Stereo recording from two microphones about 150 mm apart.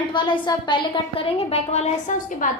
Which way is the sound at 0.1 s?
30° left (ahead or behind).